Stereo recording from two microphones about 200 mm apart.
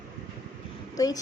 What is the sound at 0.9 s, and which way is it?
Speech, 20° left (ahead or behind).